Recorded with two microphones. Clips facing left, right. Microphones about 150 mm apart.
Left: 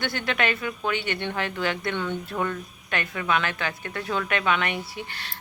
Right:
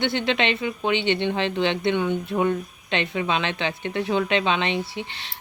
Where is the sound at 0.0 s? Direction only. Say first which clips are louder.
Right 4 dB; 20° right (ahead or behind).